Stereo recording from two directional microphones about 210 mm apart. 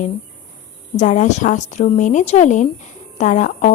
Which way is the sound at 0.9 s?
35° left (ahead or behind).